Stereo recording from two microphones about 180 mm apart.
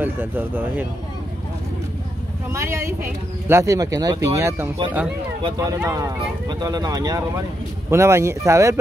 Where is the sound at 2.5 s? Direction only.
15° right (ahead or behind).